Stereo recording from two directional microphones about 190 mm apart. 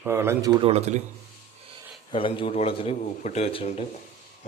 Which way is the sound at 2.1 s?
25° left (ahead or behind).